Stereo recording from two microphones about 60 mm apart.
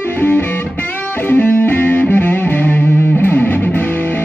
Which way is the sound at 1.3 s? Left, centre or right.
Left.